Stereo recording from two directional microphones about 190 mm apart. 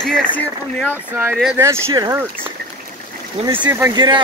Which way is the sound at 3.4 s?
35° right (ahead or behind).